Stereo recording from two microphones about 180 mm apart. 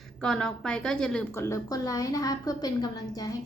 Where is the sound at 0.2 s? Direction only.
5° left (ahead or behind).